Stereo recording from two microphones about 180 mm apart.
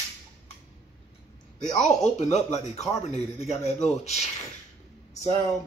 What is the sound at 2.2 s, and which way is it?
Speech, 40° left (ahead or behind).